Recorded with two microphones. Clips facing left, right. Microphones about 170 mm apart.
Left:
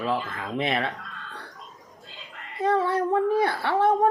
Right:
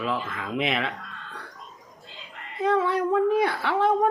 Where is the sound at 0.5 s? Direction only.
35° left (ahead or behind).